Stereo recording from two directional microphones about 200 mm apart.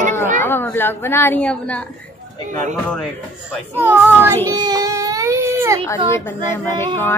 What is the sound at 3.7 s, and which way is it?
Speech, 10° right (ahead or behind).